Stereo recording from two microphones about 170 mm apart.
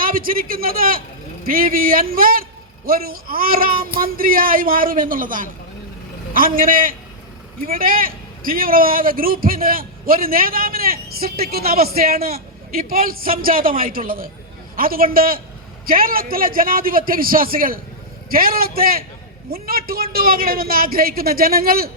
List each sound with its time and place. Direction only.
0.0 s a man's voice: 55° right (ahead or behind)